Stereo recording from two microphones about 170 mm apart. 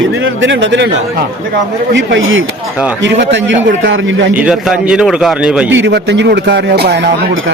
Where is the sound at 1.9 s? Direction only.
90° right.